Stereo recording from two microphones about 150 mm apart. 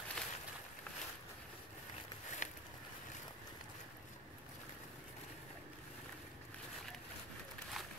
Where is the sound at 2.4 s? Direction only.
55° left (ahead or behind).